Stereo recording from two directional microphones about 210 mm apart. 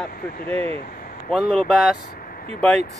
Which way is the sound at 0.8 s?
45° left (ahead or behind).